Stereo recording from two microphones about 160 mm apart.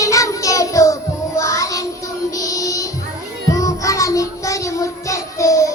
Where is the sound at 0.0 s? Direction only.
20° left (ahead or behind).